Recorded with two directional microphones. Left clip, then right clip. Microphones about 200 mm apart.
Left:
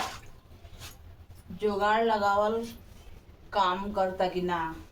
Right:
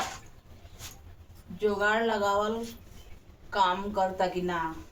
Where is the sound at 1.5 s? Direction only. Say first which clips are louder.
Even; 20° right (ahead or behind).